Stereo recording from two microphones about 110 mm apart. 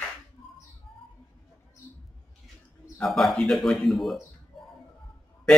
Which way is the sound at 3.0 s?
Centre (ahead or behind).